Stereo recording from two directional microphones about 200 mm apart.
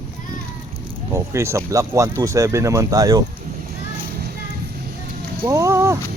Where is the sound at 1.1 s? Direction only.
15° right (ahead or behind).